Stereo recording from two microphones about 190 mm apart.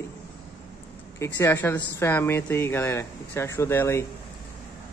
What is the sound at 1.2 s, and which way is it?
Speech, 10° left (ahead or behind).